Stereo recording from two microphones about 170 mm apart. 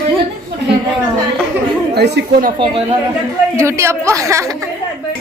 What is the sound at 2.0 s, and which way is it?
Speech, 80° right.